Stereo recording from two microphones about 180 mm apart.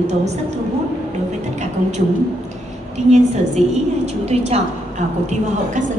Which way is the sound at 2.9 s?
40° right (ahead or behind).